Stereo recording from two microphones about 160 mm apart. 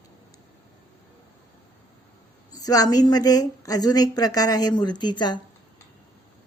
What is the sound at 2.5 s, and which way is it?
A woman's voice, 20° left (ahead or behind).